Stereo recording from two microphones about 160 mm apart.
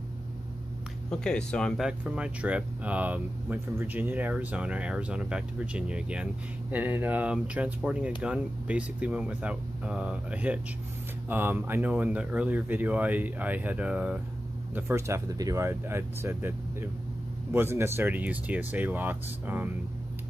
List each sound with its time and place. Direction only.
1.1 s speech: 5° left (ahead or behind)
1.9 s speech: 5° right (ahead or behind)